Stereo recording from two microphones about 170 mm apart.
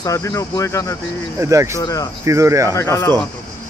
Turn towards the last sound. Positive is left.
turn(degrees=15)  # may be behind; listen again after turning